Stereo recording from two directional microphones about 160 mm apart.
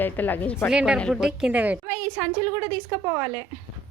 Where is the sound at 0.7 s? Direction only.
5° right (ahead or behind).